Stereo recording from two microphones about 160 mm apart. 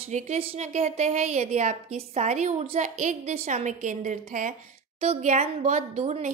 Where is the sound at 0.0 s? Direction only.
40° right (ahead or behind).